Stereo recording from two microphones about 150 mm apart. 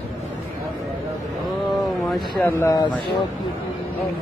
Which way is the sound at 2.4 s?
15° left (ahead or behind).